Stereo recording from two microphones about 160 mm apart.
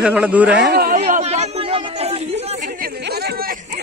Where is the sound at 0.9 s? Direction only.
45° right (ahead or behind).